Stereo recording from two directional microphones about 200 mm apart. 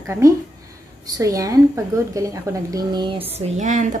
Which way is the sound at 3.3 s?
35° right (ahead or behind).